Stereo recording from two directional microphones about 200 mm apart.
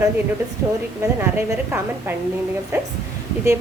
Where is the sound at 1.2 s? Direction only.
10° right (ahead or behind).